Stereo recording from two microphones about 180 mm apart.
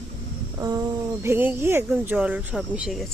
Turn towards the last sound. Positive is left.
turn(degrees=-5)  # may be behind; listen again after turning